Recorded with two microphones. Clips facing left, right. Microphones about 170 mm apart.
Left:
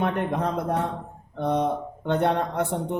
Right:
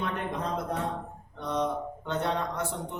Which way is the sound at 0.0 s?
60° left (ahead or behind).